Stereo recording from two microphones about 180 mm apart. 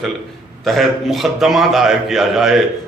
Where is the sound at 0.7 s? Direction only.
Centre (ahead or behind).